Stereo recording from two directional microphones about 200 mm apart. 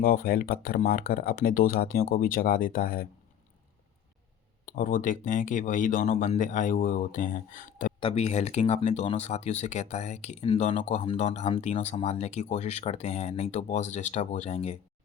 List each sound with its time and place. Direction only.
0.0 s speech: 45° left (ahead or behind)
4.6 s speech: 40° left (ahead or behind)
7.9 s speech: 30° left (ahead or behind)